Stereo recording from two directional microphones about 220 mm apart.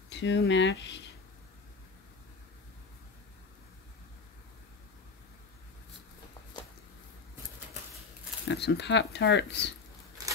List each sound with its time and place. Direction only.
0.2 s speech: 55° left (ahead or behind)
6.5 s a sound: 20° left (ahead or behind)
8.5 s speech: 50° left (ahead or behind)